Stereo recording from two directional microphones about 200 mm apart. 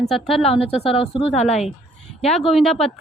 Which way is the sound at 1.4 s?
Centre (ahead or behind).